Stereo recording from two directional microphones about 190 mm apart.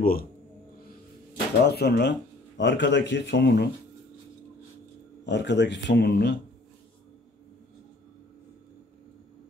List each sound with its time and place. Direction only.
0.0 s speech: 50° left (ahead or behind)
1.3 s speech: 60° left (ahead or behind)
5.2 s speech: 65° left (ahead or behind)